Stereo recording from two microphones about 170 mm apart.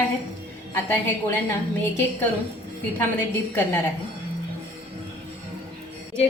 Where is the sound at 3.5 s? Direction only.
15° left (ahead or behind).